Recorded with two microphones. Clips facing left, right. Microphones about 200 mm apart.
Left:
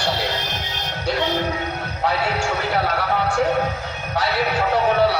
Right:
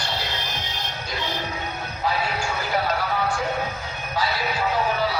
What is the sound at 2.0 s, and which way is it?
Speech, 70° left (ahead or behind).